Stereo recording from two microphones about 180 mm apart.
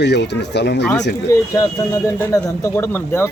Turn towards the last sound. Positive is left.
turn(degrees=15)  # may be behind; listen again after turning